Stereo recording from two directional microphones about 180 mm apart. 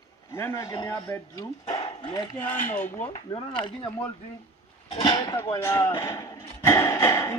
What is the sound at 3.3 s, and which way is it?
Speech, 25° left (ahead or behind).